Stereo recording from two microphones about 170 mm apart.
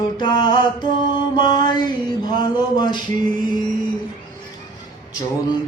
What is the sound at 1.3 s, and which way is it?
Mantra, 25° left (ahead or behind).